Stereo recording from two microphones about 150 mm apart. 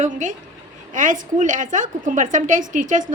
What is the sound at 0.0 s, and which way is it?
A woman's voice, 55° right (ahead or behind).